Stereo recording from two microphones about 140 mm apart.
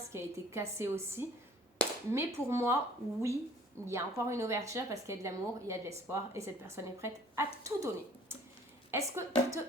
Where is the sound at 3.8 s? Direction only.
20° right (ahead or behind).